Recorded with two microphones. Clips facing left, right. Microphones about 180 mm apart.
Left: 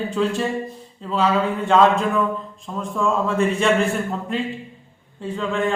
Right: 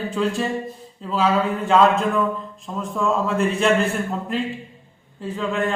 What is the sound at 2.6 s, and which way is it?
A man's voice, centre (ahead or behind).